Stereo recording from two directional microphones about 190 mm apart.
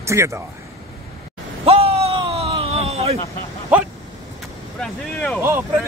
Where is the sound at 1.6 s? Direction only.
30° right (ahead or behind).